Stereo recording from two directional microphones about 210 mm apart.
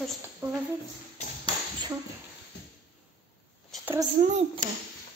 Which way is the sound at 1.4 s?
20° right (ahead or behind).